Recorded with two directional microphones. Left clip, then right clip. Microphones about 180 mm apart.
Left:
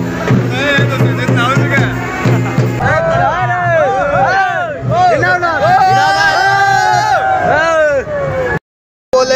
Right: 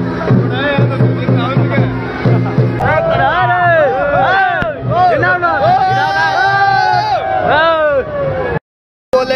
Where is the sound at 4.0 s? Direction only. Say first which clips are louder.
Even; 5° right (ahead or behind).